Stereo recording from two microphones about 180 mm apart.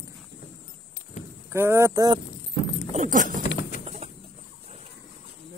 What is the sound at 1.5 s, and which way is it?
Speech, 15° right (ahead or behind).